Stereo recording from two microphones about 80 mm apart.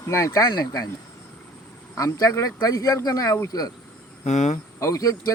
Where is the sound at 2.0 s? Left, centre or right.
Left.